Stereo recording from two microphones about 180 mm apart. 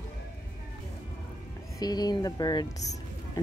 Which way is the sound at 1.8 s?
20° left (ahead or behind).